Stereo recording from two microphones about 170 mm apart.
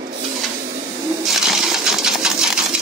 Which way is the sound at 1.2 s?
Centre (ahead or behind).